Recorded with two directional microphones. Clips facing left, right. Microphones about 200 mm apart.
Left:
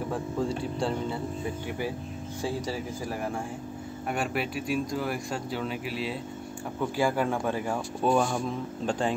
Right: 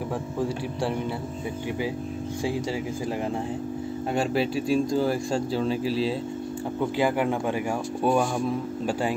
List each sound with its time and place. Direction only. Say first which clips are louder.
0.4 s speech: right 1 dB; 5° right (ahead or behind)
4.1 s speech: right 5 dB; 30° right (ahead or behind)
7.0 s speech: right 2 dB; 15° right (ahead or behind)